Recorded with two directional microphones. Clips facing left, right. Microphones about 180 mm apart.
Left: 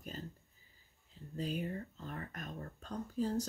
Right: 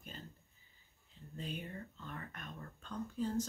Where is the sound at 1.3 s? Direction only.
35° left (ahead or behind).